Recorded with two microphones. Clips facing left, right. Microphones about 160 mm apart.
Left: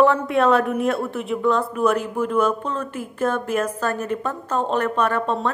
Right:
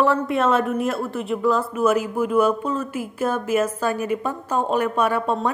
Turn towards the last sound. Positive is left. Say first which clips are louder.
# even
turn(degrees=-10)  # may be behind; listen again after turning